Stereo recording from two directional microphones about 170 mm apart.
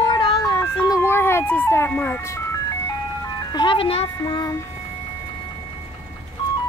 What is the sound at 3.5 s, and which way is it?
Speech, 30° left (ahead or behind).